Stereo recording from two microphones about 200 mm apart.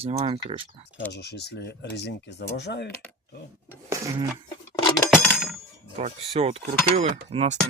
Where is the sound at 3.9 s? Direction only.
15° right (ahead or behind).